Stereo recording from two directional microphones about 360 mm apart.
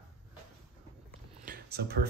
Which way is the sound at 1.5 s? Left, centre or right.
Right.